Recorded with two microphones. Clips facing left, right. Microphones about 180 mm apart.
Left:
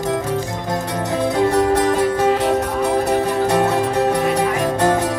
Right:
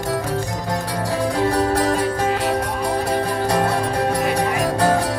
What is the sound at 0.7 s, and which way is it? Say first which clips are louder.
Music: left 2 dB; 25° left (ahead or behind).